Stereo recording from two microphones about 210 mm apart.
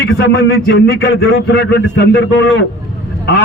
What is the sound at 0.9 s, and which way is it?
A man's voice, 55° left (ahead or behind).